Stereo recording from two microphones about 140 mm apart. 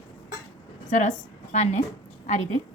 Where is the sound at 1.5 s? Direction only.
55° left (ahead or behind).